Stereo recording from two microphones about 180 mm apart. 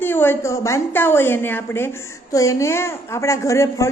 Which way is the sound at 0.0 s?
10° left (ahead or behind).